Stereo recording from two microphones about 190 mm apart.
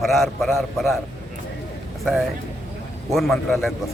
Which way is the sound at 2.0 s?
Centre (ahead or behind).